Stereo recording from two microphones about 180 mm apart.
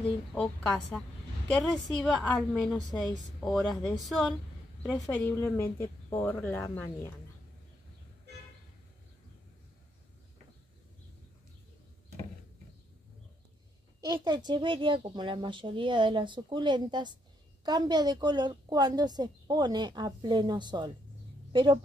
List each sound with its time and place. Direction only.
0.0 s a woman's voice: 5° left (ahead or behind)
14.0 s a woman's voice: 25° right (ahead or behind)